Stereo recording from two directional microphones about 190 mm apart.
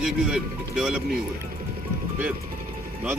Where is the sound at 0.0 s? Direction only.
5° right (ahead or behind).